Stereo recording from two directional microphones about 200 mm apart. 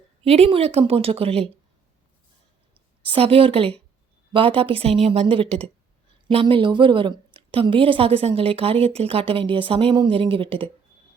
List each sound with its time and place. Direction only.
0.3 s a woman's voice: 30° right (ahead or behind)
3.0 s a woman's voice: 25° right (ahead or behind)